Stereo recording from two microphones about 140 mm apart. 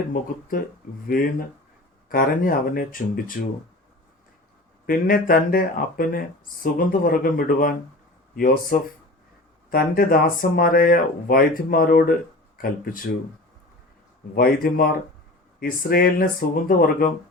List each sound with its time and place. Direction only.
0.1 s speech: 85° left
4.9 s speech: 85° left
8.7 s speech: 70° left (ahead or behind)
9.6 s speech: 90° left
14.3 s speech: 90° left